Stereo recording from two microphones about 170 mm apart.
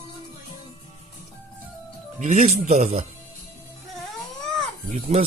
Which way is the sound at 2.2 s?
45° right (ahead or behind).